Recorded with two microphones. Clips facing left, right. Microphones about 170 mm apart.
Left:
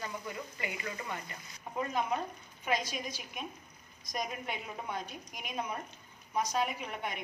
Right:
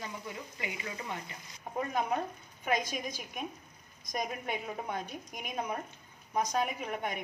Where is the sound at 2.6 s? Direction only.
50° right (ahead or behind).